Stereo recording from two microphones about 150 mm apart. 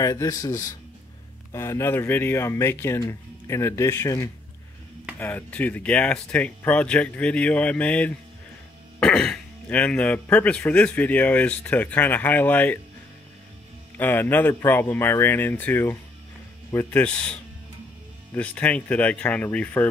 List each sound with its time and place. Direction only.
0.0 s speech: 25° left (ahead or behind)
13.9 s speech: 10° left (ahead or behind)